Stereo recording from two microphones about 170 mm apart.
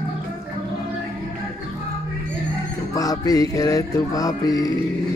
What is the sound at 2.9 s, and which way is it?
Music, 20° left (ahead or behind).